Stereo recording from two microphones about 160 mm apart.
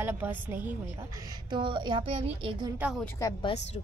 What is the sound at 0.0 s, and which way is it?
Speech, 10° right (ahead or behind).